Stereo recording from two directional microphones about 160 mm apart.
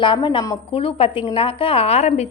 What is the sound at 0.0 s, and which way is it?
A woman's voice, 30° left (ahead or behind).